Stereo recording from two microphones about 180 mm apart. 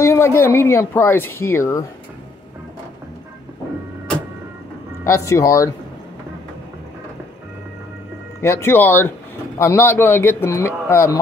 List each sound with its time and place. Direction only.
0.0 s speech: 15° left (ahead or behind)
5.0 s speech: 15° left (ahead or behind)
8.4 s speech: 15° left (ahead or behind)